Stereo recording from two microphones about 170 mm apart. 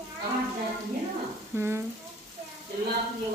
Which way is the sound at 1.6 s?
15° right (ahead or behind).